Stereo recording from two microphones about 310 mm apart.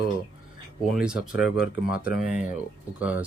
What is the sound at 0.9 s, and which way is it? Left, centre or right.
Speech, centre.